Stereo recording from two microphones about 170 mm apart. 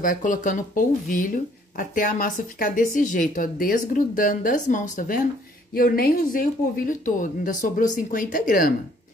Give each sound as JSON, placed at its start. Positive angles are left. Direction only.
{"t": 0.0, "sound": "speech", "side_deg": 50}
{"t": 5.7, "sound": "speech", "side_deg": 60}